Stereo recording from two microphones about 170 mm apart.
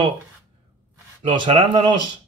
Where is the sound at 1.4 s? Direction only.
30° right (ahead or behind).